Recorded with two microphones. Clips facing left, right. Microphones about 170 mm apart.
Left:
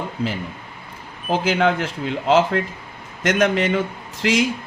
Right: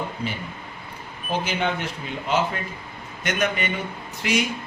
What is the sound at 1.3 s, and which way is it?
A man's voice, 90° left.